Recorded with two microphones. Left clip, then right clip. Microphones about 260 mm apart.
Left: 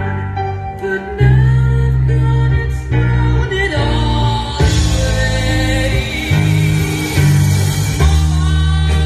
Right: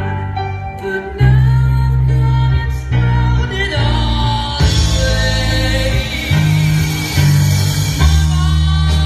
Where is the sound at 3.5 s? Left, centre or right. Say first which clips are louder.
Left 2 dB; centre.